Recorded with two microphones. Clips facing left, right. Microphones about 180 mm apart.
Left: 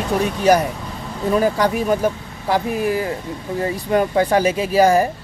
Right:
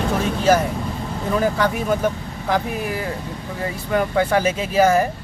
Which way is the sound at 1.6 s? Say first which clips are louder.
Left 2 dB; 35° left (ahead or behind).